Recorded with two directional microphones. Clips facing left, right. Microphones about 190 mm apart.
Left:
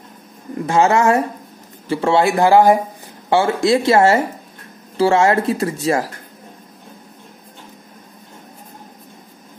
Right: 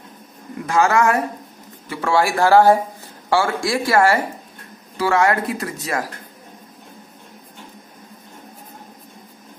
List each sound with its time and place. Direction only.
0.7 s speech: 25° left (ahead or behind)